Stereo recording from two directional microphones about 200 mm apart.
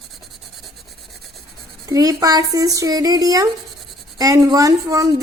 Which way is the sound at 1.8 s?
20° right (ahead or behind).